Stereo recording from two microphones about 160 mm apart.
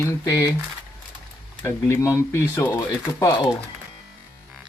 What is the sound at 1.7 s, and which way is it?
Speech, 15° left (ahead or behind).